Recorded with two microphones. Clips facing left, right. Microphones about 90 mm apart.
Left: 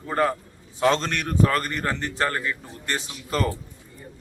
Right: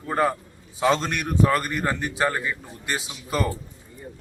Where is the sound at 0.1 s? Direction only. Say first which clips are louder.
Even; 5° right (ahead or behind).